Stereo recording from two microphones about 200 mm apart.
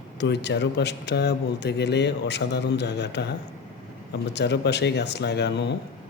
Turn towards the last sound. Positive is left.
turn(degrees=60)  # may be behind; listen again after turning